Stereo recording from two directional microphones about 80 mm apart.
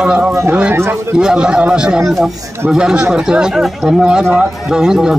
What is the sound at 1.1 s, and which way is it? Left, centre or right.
Speech, centre.